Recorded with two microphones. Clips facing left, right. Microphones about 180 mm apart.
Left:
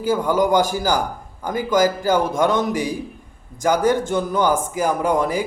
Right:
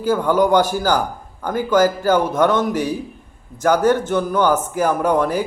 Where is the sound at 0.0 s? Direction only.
10° left (ahead or behind).